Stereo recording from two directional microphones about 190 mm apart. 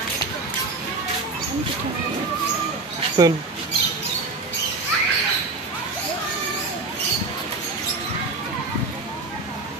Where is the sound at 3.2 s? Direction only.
20° right (ahead or behind).